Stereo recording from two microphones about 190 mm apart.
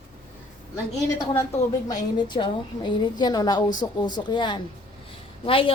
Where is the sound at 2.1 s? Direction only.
25° left (ahead or behind).